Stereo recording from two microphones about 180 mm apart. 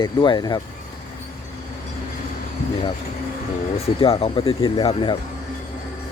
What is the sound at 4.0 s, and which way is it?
Speech, 30° left (ahead or behind).